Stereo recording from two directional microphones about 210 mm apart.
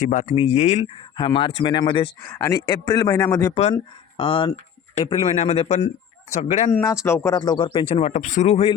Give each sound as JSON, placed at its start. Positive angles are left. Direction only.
{"t": 0.0, "sound": "a man's voice", "side_deg": 35}
{"t": 3.5, "sound": "speech", "side_deg": 30}
{"t": 6.7, "sound": "speech", "side_deg": 15}